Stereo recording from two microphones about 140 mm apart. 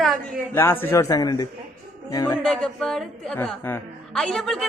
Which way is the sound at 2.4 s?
5° left (ahead or behind).